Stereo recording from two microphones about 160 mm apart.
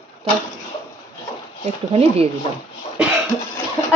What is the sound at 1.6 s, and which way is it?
Speech, 40° right (ahead or behind).